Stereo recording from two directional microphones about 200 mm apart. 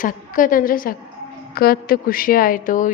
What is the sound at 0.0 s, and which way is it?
A woman's voice, 40° left (ahead or behind).